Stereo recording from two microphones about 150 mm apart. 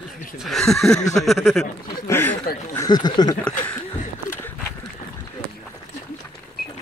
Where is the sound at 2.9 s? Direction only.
30° left (ahead or behind).